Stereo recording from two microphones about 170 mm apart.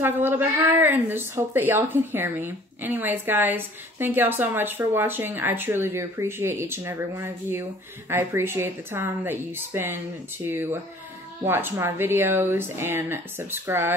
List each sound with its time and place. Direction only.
0.0 s speech: 10° right (ahead or behind)